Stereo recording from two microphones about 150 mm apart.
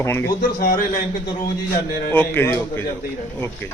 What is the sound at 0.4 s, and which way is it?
Speech, 75° left (ahead or behind).